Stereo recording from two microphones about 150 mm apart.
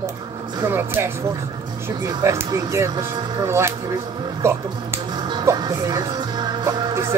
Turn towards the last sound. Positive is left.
turn(degrees=-20)  # may be behind; listen again after turning